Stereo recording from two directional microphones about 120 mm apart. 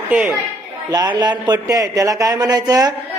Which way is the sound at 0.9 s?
35° right (ahead or behind).